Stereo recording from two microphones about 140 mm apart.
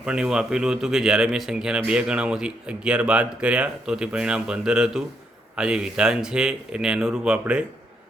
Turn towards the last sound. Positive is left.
turn(degrees=-5)  # may be behind; listen again after turning